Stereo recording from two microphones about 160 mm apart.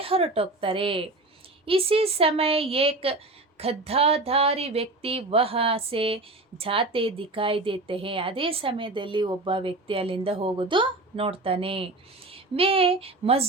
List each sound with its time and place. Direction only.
0.0 s a woman's voice: 35° right (ahead or behind)